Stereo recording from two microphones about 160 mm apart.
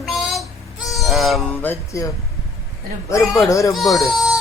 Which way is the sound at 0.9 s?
Centre (ahead or behind).